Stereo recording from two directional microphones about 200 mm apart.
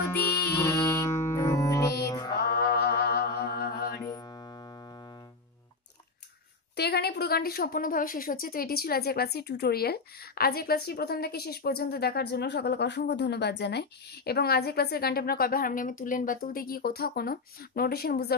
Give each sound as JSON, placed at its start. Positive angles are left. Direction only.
{"t": 0.1, "sound": "music", "side_deg": 15}
{"t": 2.3, "sound": "music", "side_deg": 50}
{"t": 4.1, "sound": "music", "side_deg": 20}
{"t": 6.7, "sound": "a woman's voice", "side_deg": 55}